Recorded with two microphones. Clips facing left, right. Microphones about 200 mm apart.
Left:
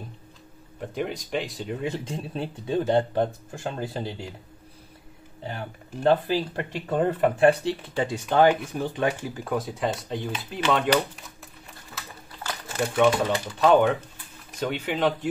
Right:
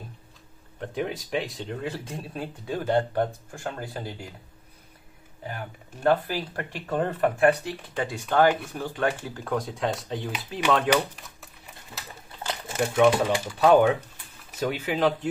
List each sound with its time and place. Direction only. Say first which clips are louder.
0.7 s speech: even; centre (ahead or behind)
1.7 s speech: left 3 dB; 20° left (ahead or behind)
5.4 s speech: left 2 dB; 25° left (ahead or behind); by 11.2 s centre (ahead or behind)
12.7 s speech: right 1 dB; 5° right (ahead or behind)